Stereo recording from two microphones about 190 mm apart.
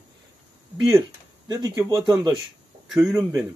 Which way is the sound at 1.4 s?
20° right (ahead or behind).